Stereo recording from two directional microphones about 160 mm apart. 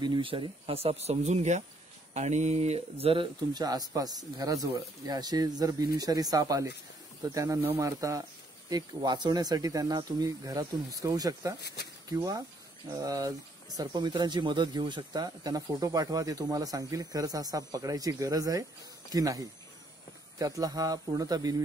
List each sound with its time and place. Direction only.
0.0 s speech: 30° right (ahead or behind)
11.6 s speech: 90° left
12.1 s speech: 20° right (ahead or behind)